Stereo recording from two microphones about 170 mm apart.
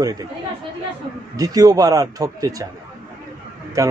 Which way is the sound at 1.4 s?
20° right (ahead or behind).